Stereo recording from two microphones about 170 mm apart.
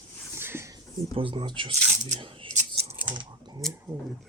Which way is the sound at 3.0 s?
25° right (ahead or behind).